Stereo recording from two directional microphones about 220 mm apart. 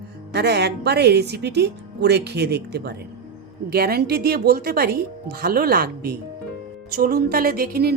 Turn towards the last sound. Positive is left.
turn(degrees=-45)  # may be behind; listen again after turning